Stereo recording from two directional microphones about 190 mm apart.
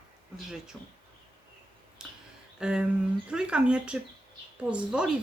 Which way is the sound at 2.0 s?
5° right (ahead or behind).